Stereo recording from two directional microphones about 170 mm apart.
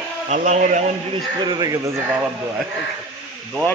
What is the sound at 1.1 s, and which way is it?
Speech, 25° right (ahead or behind).